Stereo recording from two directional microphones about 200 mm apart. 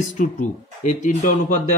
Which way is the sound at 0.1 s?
40° left (ahead or behind).